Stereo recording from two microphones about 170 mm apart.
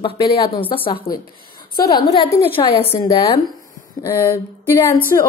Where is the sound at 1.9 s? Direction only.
25° left (ahead or behind).